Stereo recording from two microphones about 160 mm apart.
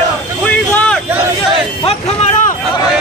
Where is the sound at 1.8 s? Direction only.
40° left (ahead or behind).